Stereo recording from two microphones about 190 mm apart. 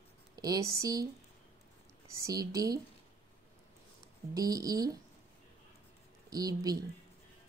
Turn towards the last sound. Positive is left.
turn(degrees=-20)  # may be behind; listen again after turning